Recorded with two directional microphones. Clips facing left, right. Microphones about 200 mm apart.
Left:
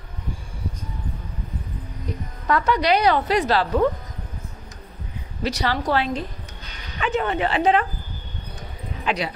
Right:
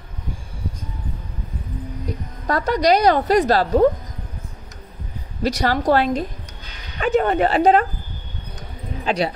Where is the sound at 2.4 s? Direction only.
40° right (ahead or behind).